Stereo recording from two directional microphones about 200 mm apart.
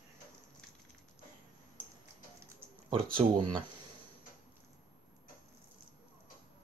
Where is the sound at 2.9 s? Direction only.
25° right (ahead or behind).